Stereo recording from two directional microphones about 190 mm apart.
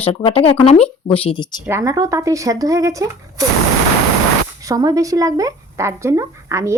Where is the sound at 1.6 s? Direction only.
15° right (ahead or behind).